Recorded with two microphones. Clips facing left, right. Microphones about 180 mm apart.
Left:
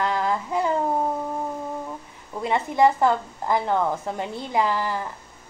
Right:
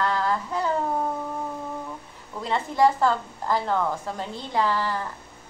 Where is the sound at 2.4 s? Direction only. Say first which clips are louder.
Left 2 dB; 15° left (ahead or behind).